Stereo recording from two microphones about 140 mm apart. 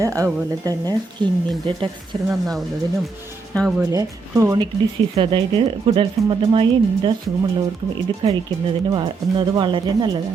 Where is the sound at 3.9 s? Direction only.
25° right (ahead or behind).